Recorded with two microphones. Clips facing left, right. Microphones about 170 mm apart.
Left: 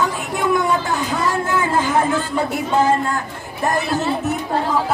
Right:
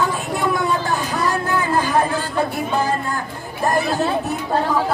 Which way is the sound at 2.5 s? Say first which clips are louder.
Left 4 dB; 20° left (ahead or behind).